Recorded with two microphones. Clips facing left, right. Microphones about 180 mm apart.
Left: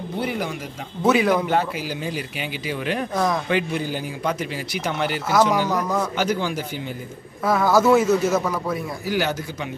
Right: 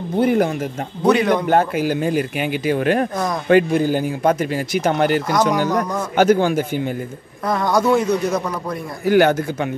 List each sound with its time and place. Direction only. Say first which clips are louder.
0.2 s a man's voice: right 11 dB; 50° right (ahead or behind)
1.0 s a man's voice: right 2 dB; 5° left (ahead or behind)
1.5 s a man's voice: right 6 dB; 50° right (ahead or behind)
7.4 s a man's voice: even; 5° left (ahead or behind)
9.0 s speech: right 12 dB; 55° right (ahead or behind)